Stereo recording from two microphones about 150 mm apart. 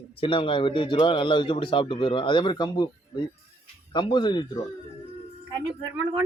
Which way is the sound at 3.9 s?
30° left (ahead or behind).